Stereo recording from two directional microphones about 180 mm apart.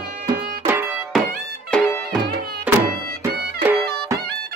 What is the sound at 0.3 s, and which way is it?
Music, 10° right (ahead or behind).